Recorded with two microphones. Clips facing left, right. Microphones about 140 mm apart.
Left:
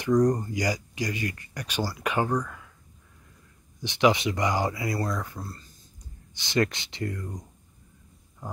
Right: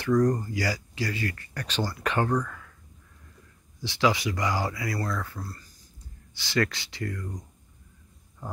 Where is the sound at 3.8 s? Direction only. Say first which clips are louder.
Left 3 dB; 20° left (ahead or behind).